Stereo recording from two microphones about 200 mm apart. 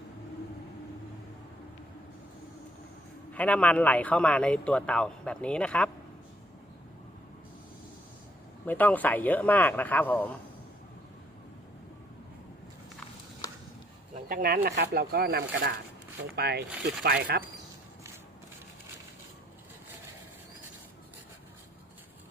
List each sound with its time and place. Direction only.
3.3 s speech: 5° left (ahead or behind)
8.6 s speech: 10° left (ahead or behind)
14.3 s speech: 45° right (ahead or behind)